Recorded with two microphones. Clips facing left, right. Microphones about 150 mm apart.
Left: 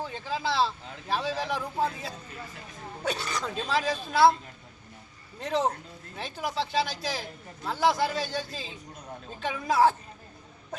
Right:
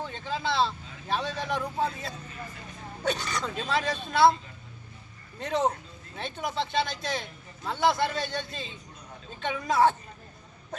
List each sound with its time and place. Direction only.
0.0 s speech: 5° left (ahead or behind)
5.4 s speech: 5° left (ahead or behind)